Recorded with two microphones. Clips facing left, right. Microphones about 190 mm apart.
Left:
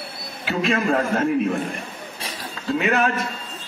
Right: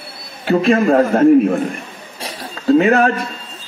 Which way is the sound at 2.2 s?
35° right (ahead or behind).